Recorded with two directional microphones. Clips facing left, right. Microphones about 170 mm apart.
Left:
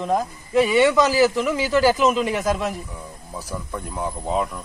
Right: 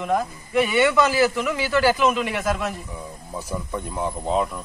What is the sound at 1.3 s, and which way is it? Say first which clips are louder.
Speech: left 3 dB; 25° left (ahead or behind).